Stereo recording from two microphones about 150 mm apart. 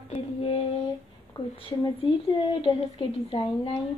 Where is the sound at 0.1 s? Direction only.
40° left (ahead or behind).